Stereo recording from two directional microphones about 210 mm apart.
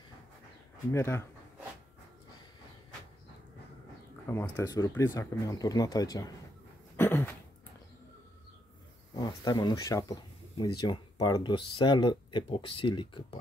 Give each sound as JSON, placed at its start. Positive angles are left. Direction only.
{"t": 0.9, "sound": "speech", "side_deg": 10}
{"t": 4.3, "sound": "speech", "side_deg": 15}
{"t": 7.0, "sound": "a sound", "side_deg": 10}
{"t": 9.1, "sound": "speech", "side_deg": 20}